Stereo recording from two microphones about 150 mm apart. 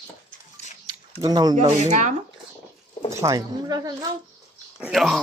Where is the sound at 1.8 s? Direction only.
50° right (ahead or behind).